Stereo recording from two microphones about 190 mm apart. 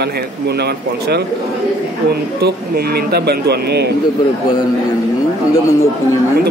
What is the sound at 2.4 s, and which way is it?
A man's voice, 55° right (ahead or behind).